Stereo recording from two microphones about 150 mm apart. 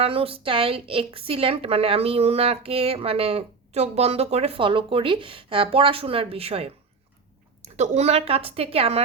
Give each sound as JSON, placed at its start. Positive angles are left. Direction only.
{"t": 0.0, "sound": "a woman's voice", "side_deg": -40}